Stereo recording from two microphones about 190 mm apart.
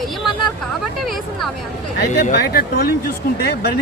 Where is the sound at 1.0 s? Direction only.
Centre (ahead or behind).